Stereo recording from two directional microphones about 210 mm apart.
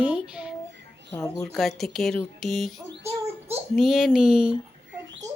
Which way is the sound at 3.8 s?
Centre (ahead or behind).